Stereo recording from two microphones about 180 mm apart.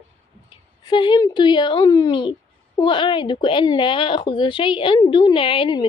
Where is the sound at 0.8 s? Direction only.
25° left (ahead or behind).